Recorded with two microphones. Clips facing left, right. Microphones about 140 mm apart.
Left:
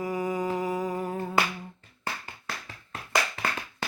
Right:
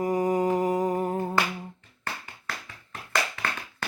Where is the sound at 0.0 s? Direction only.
45° right (ahead or behind).